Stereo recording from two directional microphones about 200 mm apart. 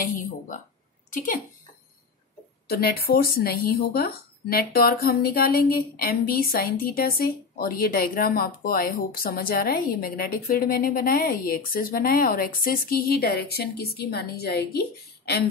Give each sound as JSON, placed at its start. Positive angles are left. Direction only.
{"t": 0.0, "sound": "a woman's voice", "side_deg": 45}
{"t": 2.7, "sound": "speech", "side_deg": 50}